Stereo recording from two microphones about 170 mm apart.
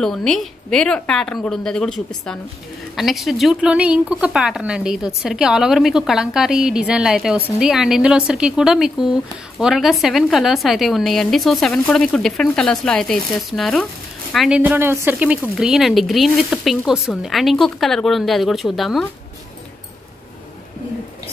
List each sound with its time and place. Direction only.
0.0 s speech: 5° left (ahead or behind)
14.6 s a woman's voice: 10° right (ahead or behind)